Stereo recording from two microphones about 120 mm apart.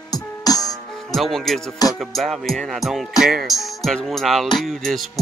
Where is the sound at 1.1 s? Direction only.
Centre (ahead or behind).